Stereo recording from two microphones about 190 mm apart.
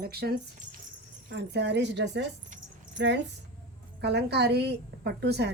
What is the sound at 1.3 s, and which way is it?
A woman's voice, 65° right (ahead or behind).